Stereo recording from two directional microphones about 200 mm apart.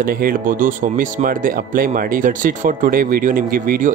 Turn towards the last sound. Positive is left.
turn(degrees=-45)  # may be behind; listen again after turning